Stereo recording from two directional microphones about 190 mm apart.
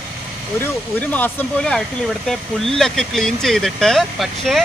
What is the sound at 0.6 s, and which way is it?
Speech, 10° left (ahead or behind).